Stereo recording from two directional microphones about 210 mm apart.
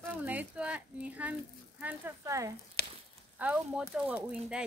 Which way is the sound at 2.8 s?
50° left (ahead or behind).